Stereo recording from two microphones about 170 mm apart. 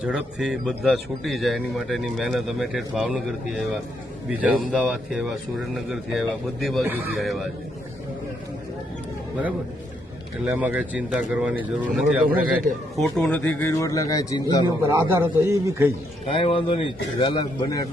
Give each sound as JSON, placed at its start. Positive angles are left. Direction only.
{"t": 0.0, "sound": "a man's voice", "side_deg": -5}
{"t": 10.4, "sound": "speech", "side_deg": -10}
{"t": 13.0, "sound": "a man's voice", "side_deg": 5}
{"t": 14.8, "sound": "speech", "side_deg": -15}
{"t": 16.3, "sound": "a man's voice", "side_deg": 30}